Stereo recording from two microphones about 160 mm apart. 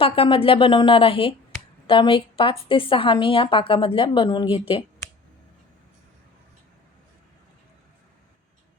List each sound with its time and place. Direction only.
0.0 s speech: 35° left (ahead or behind)